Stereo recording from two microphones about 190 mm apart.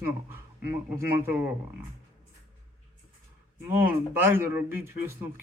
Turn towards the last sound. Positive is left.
turn(degrees=-10)  # may be behind; listen again after turning